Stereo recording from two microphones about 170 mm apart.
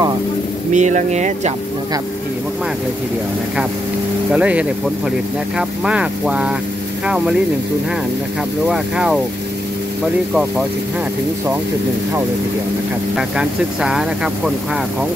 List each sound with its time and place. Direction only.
0.7 s speech: 45° right (ahead or behind)
4.3 s speech: 10° right (ahead or behind)
8.6 s speech: 5° right (ahead or behind)
13.1 s speech: 5° right (ahead or behind)